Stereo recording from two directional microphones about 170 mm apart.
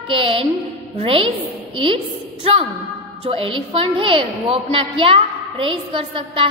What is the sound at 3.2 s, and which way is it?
A woman's voice, 35° right (ahead or behind).